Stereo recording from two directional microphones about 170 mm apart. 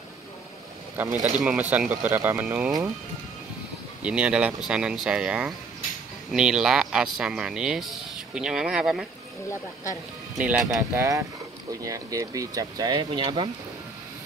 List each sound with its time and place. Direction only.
1.2 s speech: centre (ahead or behind)
4.0 s speech: 5° right (ahead or behind)
10.3 s speech: 5° right (ahead or behind)
11.0 s speech: 20° right (ahead or behind)